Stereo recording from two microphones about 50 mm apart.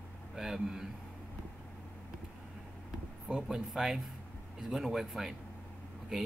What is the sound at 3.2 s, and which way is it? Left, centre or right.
Speech, centre.